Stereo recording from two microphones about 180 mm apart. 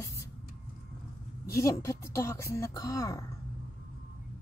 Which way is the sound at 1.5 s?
15° left (ahead or behind).